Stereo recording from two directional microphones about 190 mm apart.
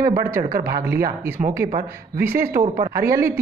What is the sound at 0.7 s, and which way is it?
Speech, 50° right (ahead or behind).